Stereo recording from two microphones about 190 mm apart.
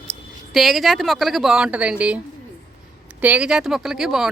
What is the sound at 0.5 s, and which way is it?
Speech, centre (ahead or behind).